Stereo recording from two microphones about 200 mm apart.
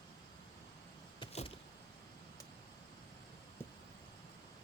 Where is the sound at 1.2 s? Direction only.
30° left (ahead or behind).